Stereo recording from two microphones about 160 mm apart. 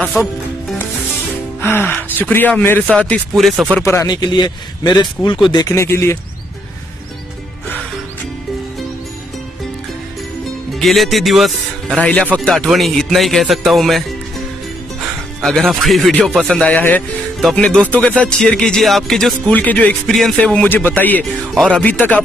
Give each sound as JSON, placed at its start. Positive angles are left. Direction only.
{"t": 1.6, "sound": "speech", "side_deg": 15}
{"t": 3.7, "sound": "a man's voice", "side_deg": 15}
{"t": 10.7, "sound": "speech", "side_deg": 0}
{"t": 15.6, "sound": "speech", "side_deg": 0}